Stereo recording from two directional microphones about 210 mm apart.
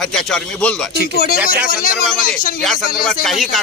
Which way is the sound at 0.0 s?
Centre (ahead or behind).